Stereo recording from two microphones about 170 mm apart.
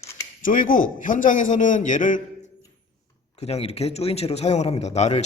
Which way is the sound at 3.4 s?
40° left (ahead or behind).